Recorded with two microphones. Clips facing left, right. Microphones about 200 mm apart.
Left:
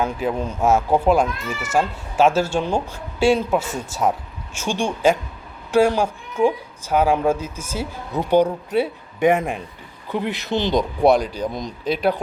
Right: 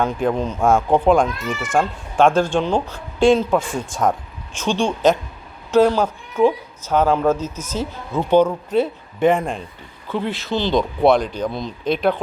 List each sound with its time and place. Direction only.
0.0 s speech: 5° left (ahead or behind)